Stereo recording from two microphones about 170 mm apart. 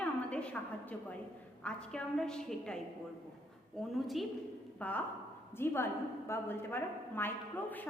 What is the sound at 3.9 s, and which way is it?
A woman's voice, centre (ahead or behind).